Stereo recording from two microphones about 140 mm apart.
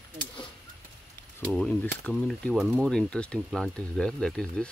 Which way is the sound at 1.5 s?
5° left (ahead or behind).